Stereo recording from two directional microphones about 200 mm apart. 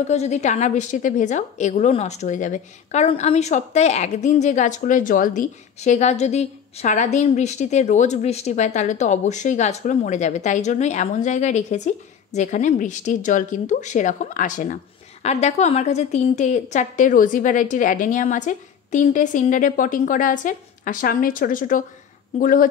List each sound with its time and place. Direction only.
0.0 s a woman's voice: 35° left (ahead or behind)